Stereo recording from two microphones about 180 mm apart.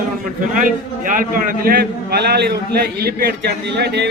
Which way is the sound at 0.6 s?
50° right (ahead or behind).